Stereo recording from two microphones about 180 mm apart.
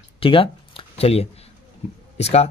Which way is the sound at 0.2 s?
30° left (ahead or behind).